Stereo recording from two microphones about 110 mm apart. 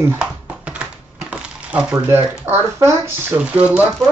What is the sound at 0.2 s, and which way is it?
Typing, 10° right (ahead or behind).